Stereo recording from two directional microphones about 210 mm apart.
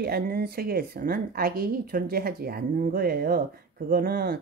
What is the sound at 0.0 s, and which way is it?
Speech, 50° right (ahead or behind).